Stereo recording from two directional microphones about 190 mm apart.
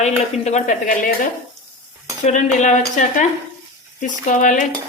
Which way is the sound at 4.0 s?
40° left (ahead or behind).